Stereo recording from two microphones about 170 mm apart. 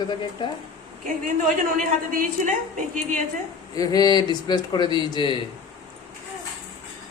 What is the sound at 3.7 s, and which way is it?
Speech, 20° left (ahead or behind).